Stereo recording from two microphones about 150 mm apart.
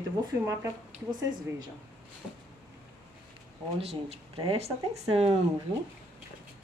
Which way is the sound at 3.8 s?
45° right (ahead or behind).